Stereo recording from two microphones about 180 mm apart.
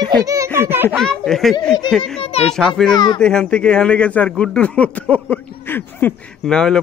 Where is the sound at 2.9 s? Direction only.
25° left (ahead or behind).